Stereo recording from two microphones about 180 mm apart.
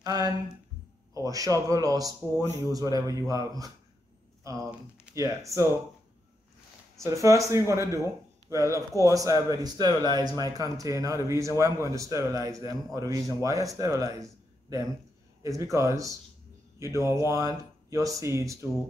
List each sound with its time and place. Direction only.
0.0 s speech: 20° right (ahead or behind)
5.1 s speech: 15° right (ahead or behind)
7.0 s speech: 15° right (ahead or behind)